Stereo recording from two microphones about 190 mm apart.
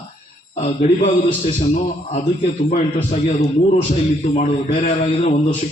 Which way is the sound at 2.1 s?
40° left (ahead or behind).